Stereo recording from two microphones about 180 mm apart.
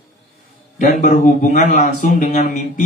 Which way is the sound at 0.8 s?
45° left (ahead or behind).